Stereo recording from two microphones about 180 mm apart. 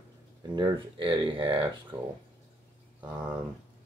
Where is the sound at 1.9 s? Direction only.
10° right (ahead or behind).